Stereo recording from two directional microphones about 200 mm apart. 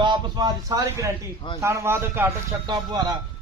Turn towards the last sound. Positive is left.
turn(degrees=-20)  # may be behind; listen again after turning